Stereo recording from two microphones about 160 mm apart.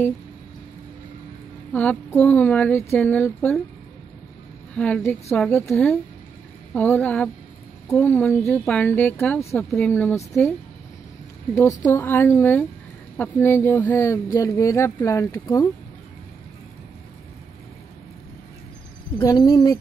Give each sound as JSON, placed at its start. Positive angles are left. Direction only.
{"t": 1.7, "sound": "speech", "side_deg": 10}
{"t": 4.7, "sound": "speech", "side_deg": 10}
{"t": 11.5, "sound": "speech", "side_deg": 15}
{"t": 19.2, "sound": "speech", "side_deg": 20}